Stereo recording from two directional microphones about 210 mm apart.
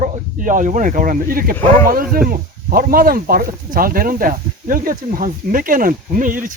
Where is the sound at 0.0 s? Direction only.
40° right (ahead or behind).